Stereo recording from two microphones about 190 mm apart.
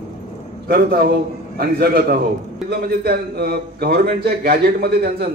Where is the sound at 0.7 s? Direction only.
55° right (ahead or behind).